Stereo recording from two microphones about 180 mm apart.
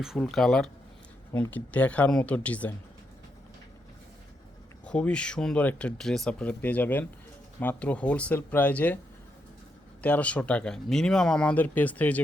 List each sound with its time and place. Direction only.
0.0 s speech: centre (ahead or behind)
4.9 s speech: 5° left (ahead or behind)
10.0 s speech: 5° left (ahead or behind)